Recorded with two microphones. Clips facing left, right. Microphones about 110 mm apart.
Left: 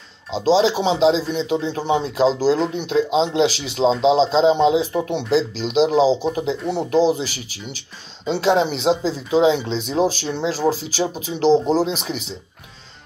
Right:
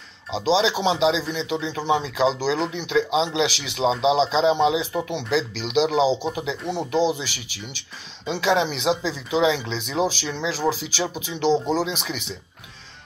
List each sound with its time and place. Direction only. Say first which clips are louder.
0.4 s speech: left 4 dB; 40° left (ahead or behind)
3.9 s speech: left 3 dB; 5° right (ahead or behind)
4.2 s speech: left 4 dB; 35° left (ahead or behind)
6.5 s speech: left 4 dB; centre (ahead or behind)
6.9 s speech: left 5 dB; 40° left (ahead or behind)